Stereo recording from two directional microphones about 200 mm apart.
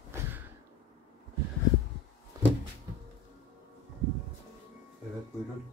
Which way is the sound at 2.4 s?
15° right (ahead or behind).